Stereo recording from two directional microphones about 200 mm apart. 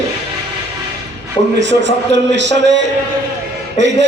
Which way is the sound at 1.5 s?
60° right (ahead or behind).